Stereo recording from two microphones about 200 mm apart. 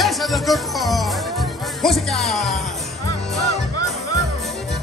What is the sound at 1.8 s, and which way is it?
Music, centre (ahead or behind).